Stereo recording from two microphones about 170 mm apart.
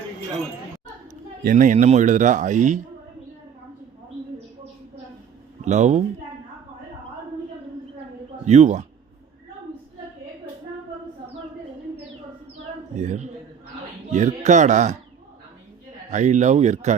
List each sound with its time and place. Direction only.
1.5 s speech: 50° right (ahead or behind)
5.6 s speech: 45° right (ahead or behind)
8.4 s speech: 45° right (ahead or behind)
13.0 s speech: 45° right (ahead or behind)
16.0 s speech: 45° right (ahead or behind)